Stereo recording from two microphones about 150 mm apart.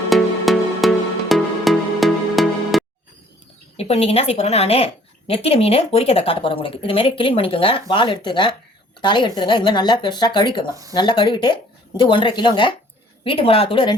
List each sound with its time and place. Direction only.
0.1 s music: centre (ahead or behind)
3.8 s a woman's voice: 45° left (ahead or behind)